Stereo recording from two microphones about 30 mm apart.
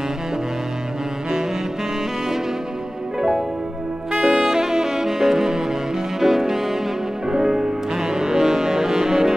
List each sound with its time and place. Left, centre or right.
4.1 s saxophone: right
4.5 s saxophone: centre
6.1 s music: centre